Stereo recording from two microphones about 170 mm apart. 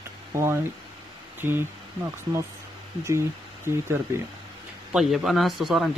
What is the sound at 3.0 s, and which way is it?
Speech, 15° right (ahead or behind).